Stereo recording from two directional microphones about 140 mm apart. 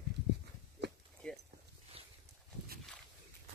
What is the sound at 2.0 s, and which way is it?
Horse, 45° right (ahead or behind).